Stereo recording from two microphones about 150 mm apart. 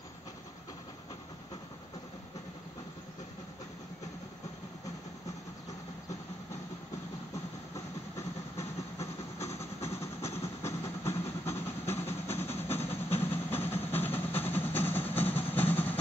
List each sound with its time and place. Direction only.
7.7 s train: 20° left (ahead or behind)